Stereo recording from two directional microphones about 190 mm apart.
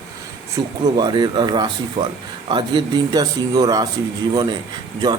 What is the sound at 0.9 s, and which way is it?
Speech, 20° right (ahead or behind).